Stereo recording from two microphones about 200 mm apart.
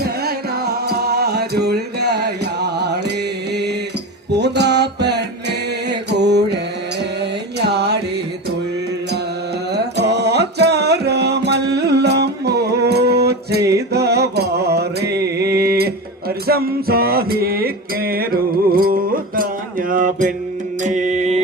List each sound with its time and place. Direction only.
0.0 s music: 50° right (ahead or behind)
4.3 s music: 55° right (ahead or behind)
7.6 s music: 55° right (ahead or behind)
9.7 s music: 55° right (ahead or behind)
15.4 s a sound: 50° right (ahead or behind)
16.5 s music: 50° right (ahead or behind)
20.8 s mantra: 40° right (ahead or behind)